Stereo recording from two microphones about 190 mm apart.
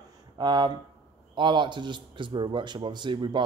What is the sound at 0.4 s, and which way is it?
A man's voice, 25° right (ahead or behind).